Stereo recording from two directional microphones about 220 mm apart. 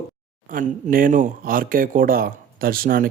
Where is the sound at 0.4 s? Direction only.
40° right (ahead or behind).